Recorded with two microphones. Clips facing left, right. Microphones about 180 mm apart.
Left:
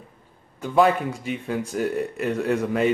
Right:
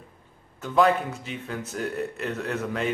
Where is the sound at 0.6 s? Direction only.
10° left (ahead or behind).